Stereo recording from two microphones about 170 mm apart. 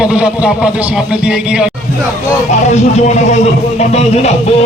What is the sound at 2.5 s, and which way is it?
Speech, 40° left (ahead or behind).